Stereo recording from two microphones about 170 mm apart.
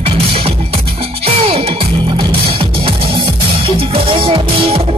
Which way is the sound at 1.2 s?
35° right (ahead or behind).